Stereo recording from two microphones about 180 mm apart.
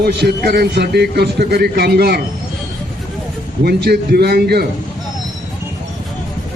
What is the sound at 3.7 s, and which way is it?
A man's voice, 60° right (ahead or behind).